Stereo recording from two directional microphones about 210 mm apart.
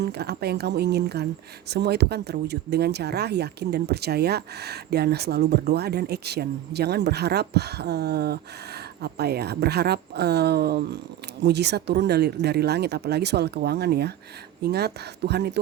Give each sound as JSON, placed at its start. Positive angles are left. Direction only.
{"t": 0.0, "sound": "speech", "side_deg": -50}